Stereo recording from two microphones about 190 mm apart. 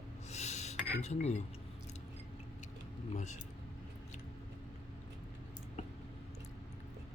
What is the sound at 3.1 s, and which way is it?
Speech, 35° left (ahead or behind).